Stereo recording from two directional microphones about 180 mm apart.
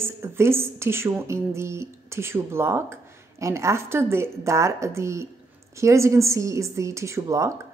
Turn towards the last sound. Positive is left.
turn(degrees=-15)  # may be behind; listen again after turning